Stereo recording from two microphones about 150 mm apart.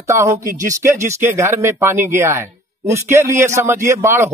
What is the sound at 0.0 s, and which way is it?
Speech, 20° right (ahead or behind).